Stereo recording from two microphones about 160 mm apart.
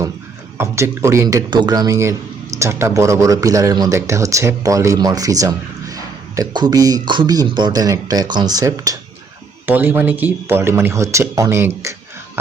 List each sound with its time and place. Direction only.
0.5 s speech: 15° right (ahead or behind)
9.6 s speech: 10° right (ahead or behind)